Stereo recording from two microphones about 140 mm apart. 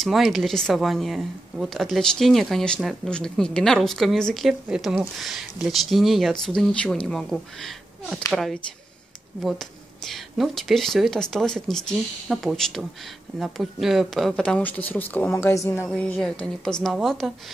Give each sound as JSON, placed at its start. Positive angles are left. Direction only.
{"t": 0.0, "sound": "speech", "side_deg": 0}
{"t": 15.9, "sound": "speech", "side_deg": 5}